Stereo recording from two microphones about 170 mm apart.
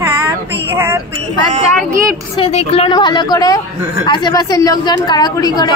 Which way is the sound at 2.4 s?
35° left (ahead or behind).